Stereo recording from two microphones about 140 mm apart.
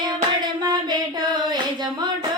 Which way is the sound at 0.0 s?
30° right (ahead or behind).